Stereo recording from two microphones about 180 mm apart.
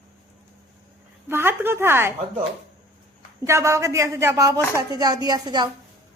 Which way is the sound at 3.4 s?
15° right (ahead or behind).